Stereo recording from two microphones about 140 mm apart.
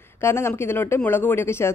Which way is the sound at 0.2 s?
15° left (ahead or behind).